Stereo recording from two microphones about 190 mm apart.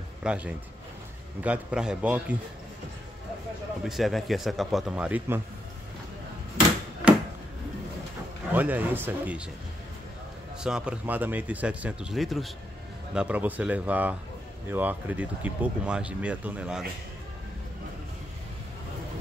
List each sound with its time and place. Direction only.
0.2 s a man's voice: 5° right (ahead or behind)
3.8 s speech: centre (ahead or behind)
7.0 s a sound: 5° right (ahead or behind)
8.5 s speech: 10° right (ahead or behind)
10.6 s speech: 5° right (ahead or behind)